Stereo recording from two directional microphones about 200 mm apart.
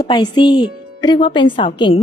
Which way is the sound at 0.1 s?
20° left (ahead or behind).